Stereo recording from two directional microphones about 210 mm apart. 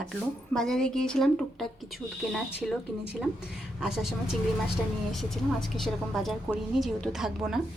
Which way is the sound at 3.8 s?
Centre (ahead or behind).